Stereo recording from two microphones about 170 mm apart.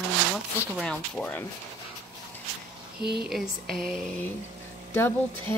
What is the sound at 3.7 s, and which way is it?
Speech, 5° left (ahead or behind).